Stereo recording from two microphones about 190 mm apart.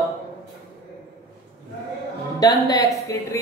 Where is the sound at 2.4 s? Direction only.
20° left (ahead or behind).